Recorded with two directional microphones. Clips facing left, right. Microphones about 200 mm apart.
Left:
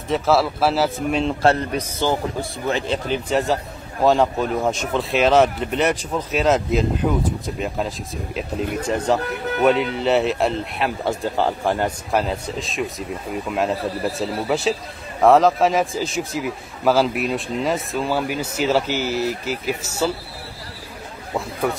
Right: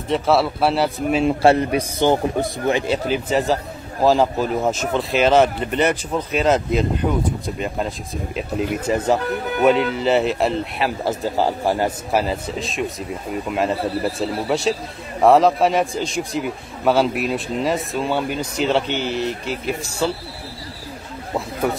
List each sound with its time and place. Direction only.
0.1 s speech: centre (ahead or behind)
21.6 s speech: centre (ahead or behind)